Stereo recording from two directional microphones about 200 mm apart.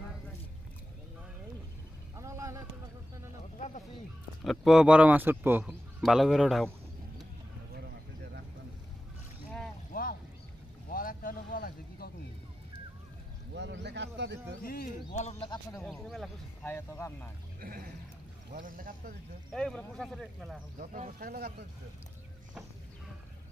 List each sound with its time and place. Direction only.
2.1 s vehicle: 15° right (ahead or behind)
3.5 s a sound: 35° left (ahead or behind)
4.4 s speech: centre (ahead or behind)
10.9 s vehicle: 45° left (ahead or behind)
13.6 s a sound: 60° right (ahead or behind)
14.6 s speech: 45° left (ahead or behind); by 15.8 s 25° left (ahead or behind)
15.8 s speech: centre (ahead or behind)
16.6 s speech: 10° left (ahead or behind)
17.6 s speech: 45° right (ahead or behind)
19.5 s speech: 5° left (ahead or behind)
20.7 s speech: 40° right (ahead or behind)